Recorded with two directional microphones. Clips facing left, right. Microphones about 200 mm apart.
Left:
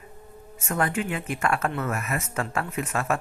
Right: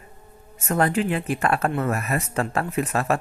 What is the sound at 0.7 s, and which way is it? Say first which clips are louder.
A man's voice: right 5 dB; 35° right (ahead or behind).